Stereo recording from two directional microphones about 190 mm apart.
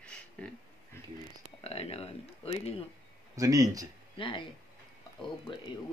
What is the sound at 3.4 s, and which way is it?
Speech, 20° right (ahead or behind).